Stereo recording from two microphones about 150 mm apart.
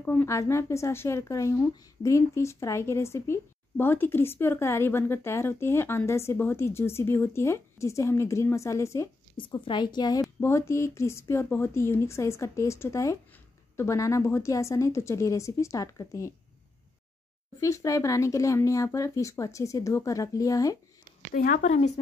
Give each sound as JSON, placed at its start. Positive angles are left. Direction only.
{"t": 0.0, "sound": "a woman's voice", "side_deg": 15}
{"t": 9.4, "sound": "a woman's voice", "side_deg": 30}
{"t": 17.6, "sound": "speech", "side_deg": 20}
{"t": 21.3, "sound": "speech", "side_deg": 70}
{"t": 21.6, "sound": "speech", "side_deg": 50}